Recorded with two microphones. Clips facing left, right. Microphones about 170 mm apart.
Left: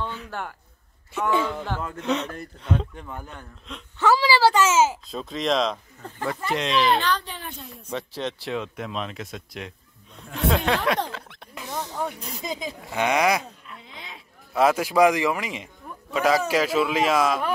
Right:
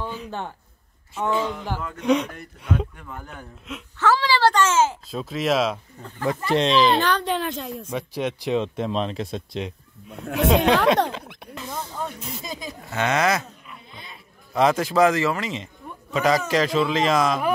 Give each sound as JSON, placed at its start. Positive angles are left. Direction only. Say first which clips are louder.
{"t": 0.0, "sound": "speech", "louder": "right 1 dB", "side_deg": -15}
{"t": 4.0, "sound": "a man's voice", "louder": "left 1 dB", "side_deg": 10}
{"t": 5.2, "sound": "speech", "louder": "right 2 dB", "side_deg": -5}
{"t": 6.5, "sound": "speech", "louder": "right 4 dB", "side_deg": -30}
{"t": 7.0, "sound": "a woman's voice", "louder": "right 5 dB", "side_deg": -60}
{"t": 7.9, "sound": "speech", "louder": "right 2 dB", "side_deg": -10}
{"t": 11.9, "sound": "snake", "louder": "left 2 dB", "side_deg": 15}
{"t": 12.4, "sound": "a man's voice", "louder": "left 2 dB", "side_deg": 15}
{"t": 13.8, "sound": "a sound", "louder": "left 1 dB", "side_deg": 90}
{"t": 14.5, "sound": "a man's voice", "louder": "right 1 dB", "side_deg": 5}